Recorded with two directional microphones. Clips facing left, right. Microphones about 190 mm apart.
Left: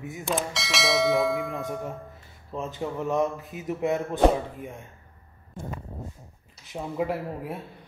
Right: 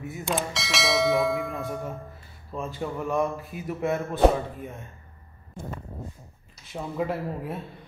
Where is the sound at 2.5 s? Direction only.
20° left (ahead or behind).